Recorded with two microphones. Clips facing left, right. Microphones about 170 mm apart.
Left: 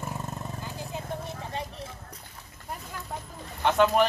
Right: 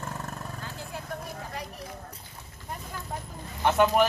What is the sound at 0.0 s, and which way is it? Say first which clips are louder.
Vehicle: left 1 dB; 15° left (ahead or behind).